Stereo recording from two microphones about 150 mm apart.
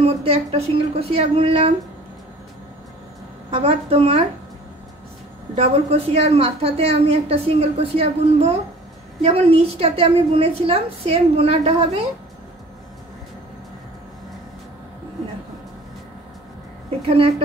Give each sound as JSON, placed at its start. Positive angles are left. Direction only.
{"t": 0.0, "sound": "a woman's voice", "side_deg": -40}
{"t": 3.4, "sound": "a woman's voice", "side_deg": -40}
{"t": 5.6, "sound": "a woman's voice", "side_deg": -40}